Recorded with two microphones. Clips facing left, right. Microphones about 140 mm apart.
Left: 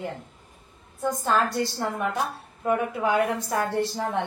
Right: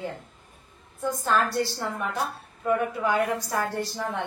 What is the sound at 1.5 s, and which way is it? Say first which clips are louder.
A woman's voice: left 1 dB; 15° left (ahead or behind).